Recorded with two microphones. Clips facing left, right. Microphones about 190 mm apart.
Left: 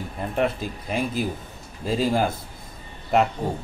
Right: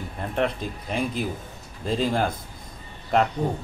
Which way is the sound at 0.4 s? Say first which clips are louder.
Left 1 dB; 5° left (ahead or behind).